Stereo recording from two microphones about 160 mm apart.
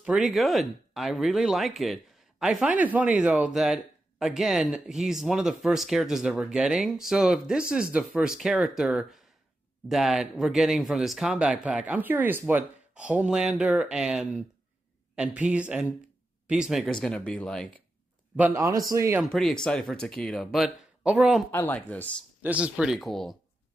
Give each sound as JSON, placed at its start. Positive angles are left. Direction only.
{"t": 0.0, "sound": "a man's voice", "side_deg": -5}
{"t": 16.8, "sound": "speech", "side_deg": 5}
{"t": 18.3, "sound": "a man's voice", "side_deg": -15}
{"t": 19.3, "sound": "speech", "side_deg": 5}
{"t": 21.5, "sound": "speech", "side_deg": 10}
{"t": 22.4, "sound": "speech", "side_deg": -10}